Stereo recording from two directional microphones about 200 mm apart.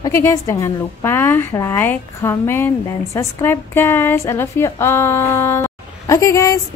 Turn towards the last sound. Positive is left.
turn(degrees=15)  # may be behind; listen again after turning